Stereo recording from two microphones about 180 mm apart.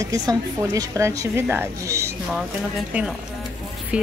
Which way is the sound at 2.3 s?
Centre (ahead or behind).